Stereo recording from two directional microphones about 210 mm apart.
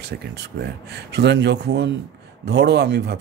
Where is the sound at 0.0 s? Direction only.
50° right (ahead or behind).